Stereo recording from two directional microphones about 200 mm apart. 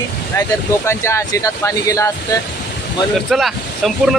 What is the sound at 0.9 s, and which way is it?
Speech, 15° left (ahead or behind).